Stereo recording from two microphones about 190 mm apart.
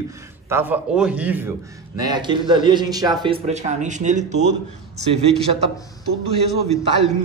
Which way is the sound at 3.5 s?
35° right (ahead or behind).